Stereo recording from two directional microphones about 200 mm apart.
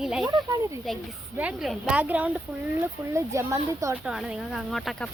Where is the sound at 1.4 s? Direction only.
5° right (ahead or behind).